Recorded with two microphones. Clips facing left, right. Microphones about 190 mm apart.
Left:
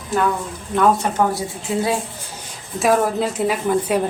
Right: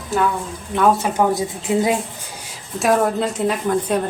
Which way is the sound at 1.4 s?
20° right (ahead or behind).